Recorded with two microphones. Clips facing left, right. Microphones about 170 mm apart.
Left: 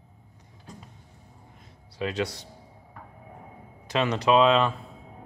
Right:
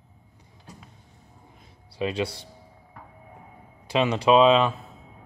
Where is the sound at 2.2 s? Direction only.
30° right (ahead or behind).